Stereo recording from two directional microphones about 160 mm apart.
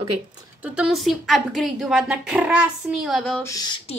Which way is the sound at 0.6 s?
10° right (ahead or behind).